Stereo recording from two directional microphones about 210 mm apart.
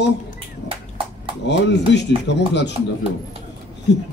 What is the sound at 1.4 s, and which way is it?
Speech, 55° left (ahead or behind).